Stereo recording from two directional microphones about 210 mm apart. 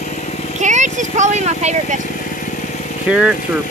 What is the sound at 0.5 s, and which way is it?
Speech, 35° right (ahead or behind).